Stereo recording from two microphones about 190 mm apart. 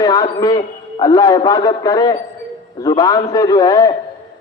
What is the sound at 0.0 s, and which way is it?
A man's voice, 20° left (ahead or behind).